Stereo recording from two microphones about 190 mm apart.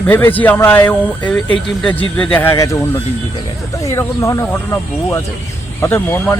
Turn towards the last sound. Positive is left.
turn(degrees=10)  # may be behind; listen again after turning